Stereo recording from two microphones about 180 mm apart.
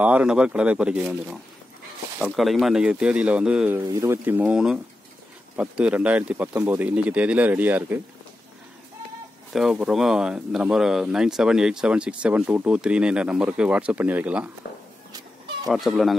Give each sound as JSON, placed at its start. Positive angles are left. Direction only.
{"t": 0.0, "sound": "speech", "side_deg": -10}
{"t": 9.5, "sound": "speech", "side_deg": 0}
{"t": 15.7, "sound": "speech", "side_deg": 0}